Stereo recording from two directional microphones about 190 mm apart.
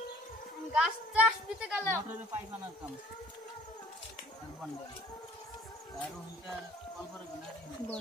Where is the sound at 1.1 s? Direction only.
5° right (ahead or behind).